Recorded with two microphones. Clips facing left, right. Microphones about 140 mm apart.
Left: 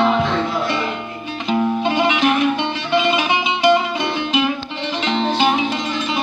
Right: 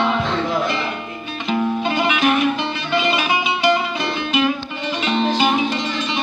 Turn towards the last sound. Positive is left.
turn(degrees=20)  # may be behind; listen again after turning